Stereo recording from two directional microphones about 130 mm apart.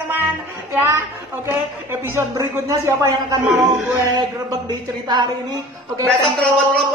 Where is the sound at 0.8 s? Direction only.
20° right (ahead or behind).